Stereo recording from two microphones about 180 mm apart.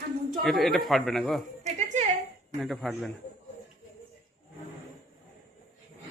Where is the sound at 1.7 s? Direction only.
40° right (ahead or behind).